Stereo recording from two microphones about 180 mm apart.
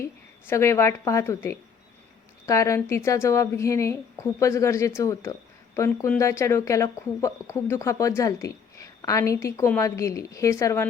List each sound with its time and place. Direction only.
0.4 s a woman's voice: 15° left (ahead or behind)